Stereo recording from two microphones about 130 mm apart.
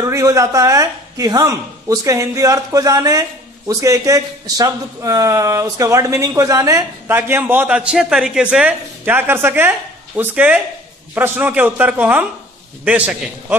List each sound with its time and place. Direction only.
0.0 s a man's voice: 25° right (ahead or behind)